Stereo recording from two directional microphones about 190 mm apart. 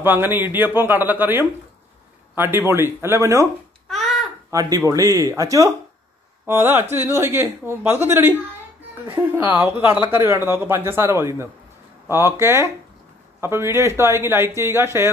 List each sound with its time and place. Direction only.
0.0 s a man's voice: 10° right (ahead or behind)
3.9 s babbling: centre (ahead or behind)
4.5 s speech: 15° right (ahead or behind)